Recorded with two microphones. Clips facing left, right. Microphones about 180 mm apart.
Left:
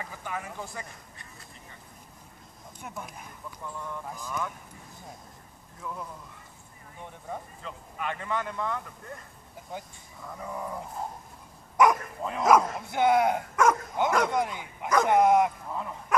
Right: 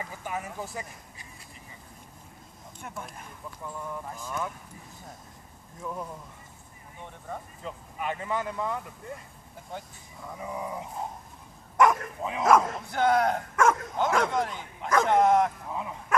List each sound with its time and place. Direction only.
0.2 s speech: 15° right (ahead or behind)
2.8 s speech: 5° left (ahead or behind)
5.8 s speech: 25° right (ahead or behind)
7.6 s speech: 15° right (ahead or behind)
10.2 s speech: 5° right (ahead or behind)
12.9 s speech: 10° left (ahead or behind)
15.7 s bow-wow: 5° right (ahead or behind)